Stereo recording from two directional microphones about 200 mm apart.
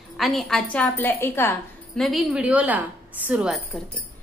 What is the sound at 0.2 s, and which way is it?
A woman's voice, centre (ahead or behind).